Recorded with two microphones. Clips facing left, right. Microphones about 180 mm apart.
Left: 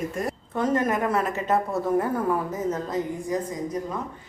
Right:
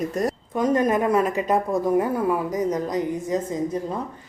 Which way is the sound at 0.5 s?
15° right (ahead or behind).